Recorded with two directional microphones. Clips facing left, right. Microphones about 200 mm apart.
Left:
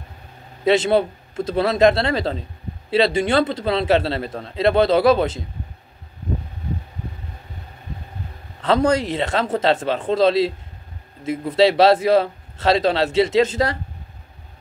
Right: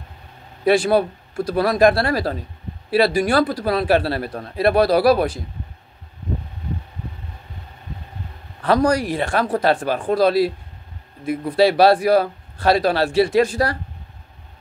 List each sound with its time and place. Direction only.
0.7 s a man's voice: 25° left (ahead or behind)
8.6 s a man's voice: 25° left (ahead or behind)